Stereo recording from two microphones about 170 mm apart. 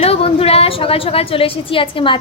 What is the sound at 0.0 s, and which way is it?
A woman's voice, 35° left (ahead or behind).